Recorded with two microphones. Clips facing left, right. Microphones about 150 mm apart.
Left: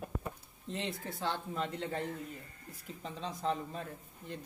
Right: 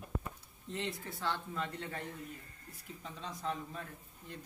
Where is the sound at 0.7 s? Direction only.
20° left (ahead or behind).